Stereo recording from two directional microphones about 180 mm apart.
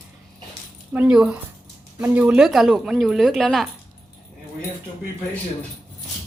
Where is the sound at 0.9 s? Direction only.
5° right (ahead or behind).